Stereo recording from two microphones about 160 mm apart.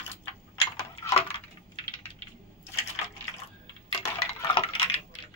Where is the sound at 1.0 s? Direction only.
15° left (ahead or behind).